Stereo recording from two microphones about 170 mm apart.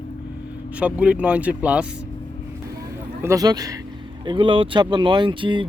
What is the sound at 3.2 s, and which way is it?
Speech, 20° right (ahead or behind).